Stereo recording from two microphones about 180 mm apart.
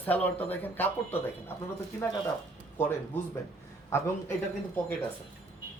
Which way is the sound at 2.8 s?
10° left (ahead or behind).